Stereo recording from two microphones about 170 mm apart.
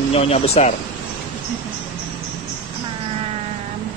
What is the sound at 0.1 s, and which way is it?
Speech, 35° left (ahead or behind).